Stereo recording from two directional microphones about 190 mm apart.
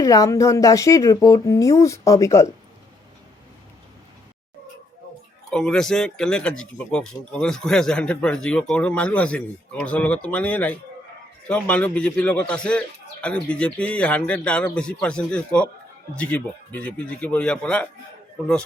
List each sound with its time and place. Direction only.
0.0 s speech: 15° left (ahead or behind)
5.5 s speech: 5° left (ahead or behind)